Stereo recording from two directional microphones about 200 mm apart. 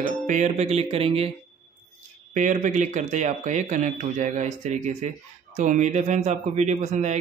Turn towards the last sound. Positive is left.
turn(degrees=-35)  # may be behind; listen again after turning